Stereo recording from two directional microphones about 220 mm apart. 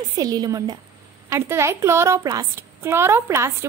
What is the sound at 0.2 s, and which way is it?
A child's voice, 15° right (ahead or behind).